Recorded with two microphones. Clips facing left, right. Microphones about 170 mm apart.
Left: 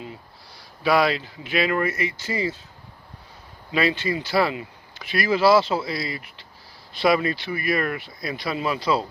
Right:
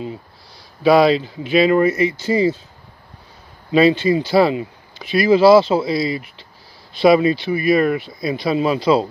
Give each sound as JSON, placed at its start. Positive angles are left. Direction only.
{"t": 0.8, "sound": "speech", "side_deg": -25}
{"t": 3.7, "sound": "speech", "side_deg": -25}